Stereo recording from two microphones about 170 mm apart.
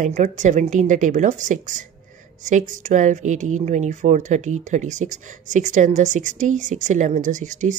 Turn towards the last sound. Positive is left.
turn(degrees=-45)  # may be behind; listen again after turning